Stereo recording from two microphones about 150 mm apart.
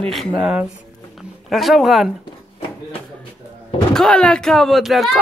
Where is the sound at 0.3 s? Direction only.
10° right (ahead or behind).